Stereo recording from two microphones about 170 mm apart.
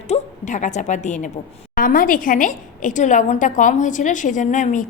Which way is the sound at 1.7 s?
55° left (ahead or behind).